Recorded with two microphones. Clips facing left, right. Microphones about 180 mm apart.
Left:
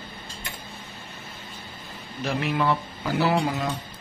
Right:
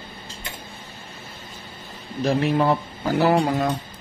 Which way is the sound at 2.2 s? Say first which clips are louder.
Right 5 dB; 35° right (ahead or behind).